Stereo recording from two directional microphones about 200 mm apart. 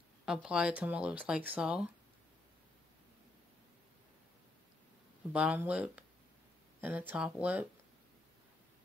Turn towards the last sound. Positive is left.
turn(degrees=-5)  # may be behind; listen again after turning